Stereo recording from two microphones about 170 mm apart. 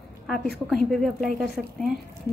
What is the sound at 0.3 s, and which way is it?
A woman's voice, centre (ahead or behind).